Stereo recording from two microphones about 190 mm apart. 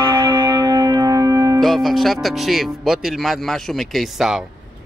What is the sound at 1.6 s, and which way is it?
Speech, centre (ahead or behind).